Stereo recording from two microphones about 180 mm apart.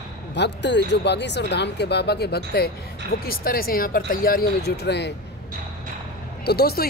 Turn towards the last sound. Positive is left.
turn(degrees=60)  # may be behind; listen again after turning